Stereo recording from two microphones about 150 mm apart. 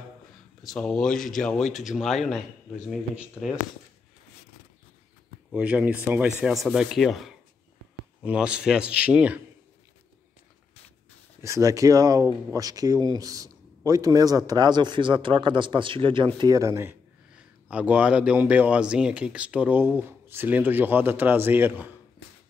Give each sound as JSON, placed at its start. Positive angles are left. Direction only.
{"t": 0.6, "sound": "speech", "side_deg": 5}
{"t": 5.5, "sound": "speech", "side_deg": -10}
{"t": 11.4, "sound": "speech", "side_deg": -20}
{"t": 16.3, "sound": "speech", "side_deg": -25}
{"t": 17.6, "sound": "speech", "side_deg": -10}